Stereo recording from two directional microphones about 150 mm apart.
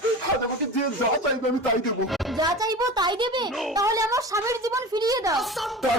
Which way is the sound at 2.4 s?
25° right (ahead or behind).